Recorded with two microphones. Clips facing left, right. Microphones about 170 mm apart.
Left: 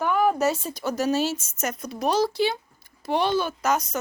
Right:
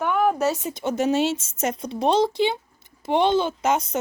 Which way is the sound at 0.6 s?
20° right (ahead or behind).